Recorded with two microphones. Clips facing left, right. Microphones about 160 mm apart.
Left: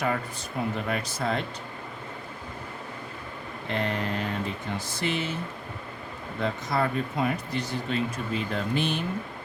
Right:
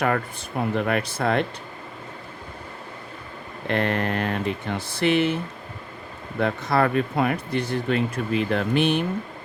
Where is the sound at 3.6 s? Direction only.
65° right (ahead or behind).